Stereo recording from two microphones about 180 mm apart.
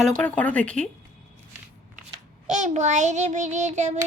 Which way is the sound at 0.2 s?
5° left (ahead or behind).